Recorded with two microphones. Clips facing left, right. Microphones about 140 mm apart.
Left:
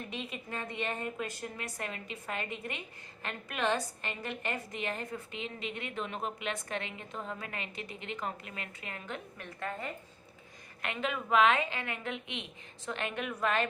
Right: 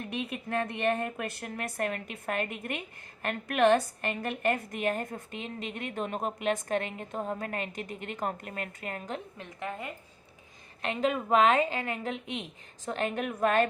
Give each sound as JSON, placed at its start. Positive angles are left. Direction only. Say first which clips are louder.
{"t": 0.1, "sound": "a woman's voice", "louder": "right 7 dB", "side_deg": -60}
{"t": 9.4, "sound": "a woman's voice", "louder": "right 1 dB", "side_deg": -15}
{"t": 10.8, "sound": "a woman's voice", "louder": "right 6 dB", "side_deg": -40}